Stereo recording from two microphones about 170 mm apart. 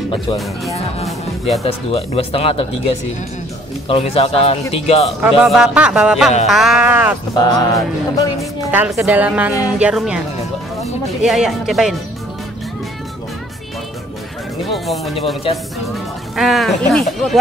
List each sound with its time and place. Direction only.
1.0 s speech: centre (ahead or behind)
1.6 s speech: 35° left (ahead or behind)
3.9 s speech: 35° left (ahead or behind)
5.2 s speech: 5° right (ahead or behind)
7.3 s music: 20° left (ahead or behind)
8.7 s a woman's voice: 10° right (ahead or behind)
14.7 s music: centre (ahead or behind)
15.5 s speech: 30° left (ahead or behind)
16.3 s speech: centre (ahead or behind)